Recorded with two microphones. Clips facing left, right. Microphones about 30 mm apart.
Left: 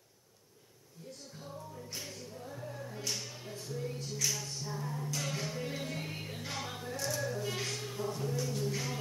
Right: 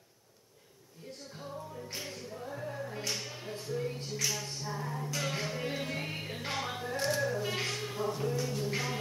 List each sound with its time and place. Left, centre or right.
1.3 s music: centre